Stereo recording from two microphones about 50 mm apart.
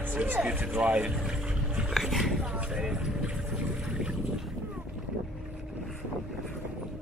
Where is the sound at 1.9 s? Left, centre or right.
Centre.